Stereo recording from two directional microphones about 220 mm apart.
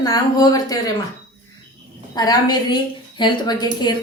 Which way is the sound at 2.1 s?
20° left (ahead or behind).